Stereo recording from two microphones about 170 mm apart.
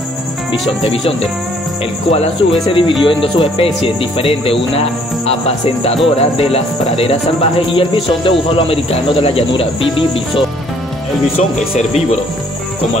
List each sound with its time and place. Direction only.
2.0 s speech: 35° left (ahead or behind)
6.0 s speech: 35° left (ahead or behind)